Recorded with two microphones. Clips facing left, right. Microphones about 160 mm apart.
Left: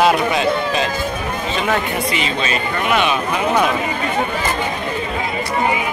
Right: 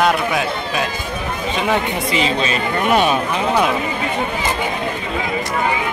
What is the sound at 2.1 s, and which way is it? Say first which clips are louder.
Speech: right 2 dB; 35° right (ahead or behind).